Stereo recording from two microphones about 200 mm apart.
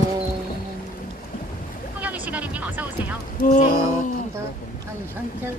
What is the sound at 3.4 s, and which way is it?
Speech, 45° left (ahead or behind).